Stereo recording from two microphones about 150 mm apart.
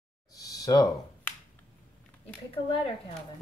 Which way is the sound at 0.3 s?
25° left (ahead or behind).